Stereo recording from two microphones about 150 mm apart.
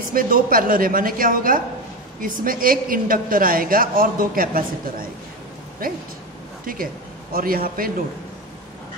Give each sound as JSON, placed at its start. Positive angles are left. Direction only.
{"t": 0.1, "sound": "a woman's voice", "side_deg": -70}
{"t": 6.6, "sound": "a woman's voice", "side_deg": -70}